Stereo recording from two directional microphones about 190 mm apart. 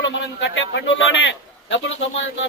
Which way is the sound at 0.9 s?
75° left (ahead or behind).